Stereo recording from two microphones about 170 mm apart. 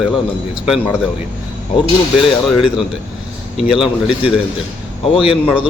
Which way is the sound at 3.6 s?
5° right (ahead or behind).